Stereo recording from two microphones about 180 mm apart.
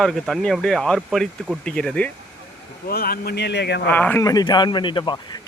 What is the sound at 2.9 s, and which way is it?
Speech, 55° left (ahead or behind).